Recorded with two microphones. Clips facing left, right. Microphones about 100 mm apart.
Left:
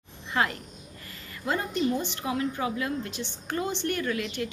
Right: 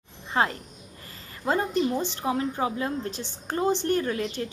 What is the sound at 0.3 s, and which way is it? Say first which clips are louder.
A woman's voice: right 2 dB; 30° right (ahead or behind).